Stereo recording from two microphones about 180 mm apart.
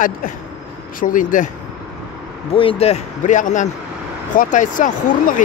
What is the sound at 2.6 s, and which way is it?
Speech, 30° left (ahead or behind).